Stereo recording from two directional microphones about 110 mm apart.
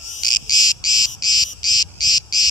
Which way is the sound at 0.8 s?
35° left (ahead or behind).